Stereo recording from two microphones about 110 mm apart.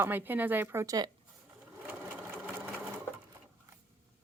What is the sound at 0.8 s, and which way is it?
Speech, 35° right (ahead or behind).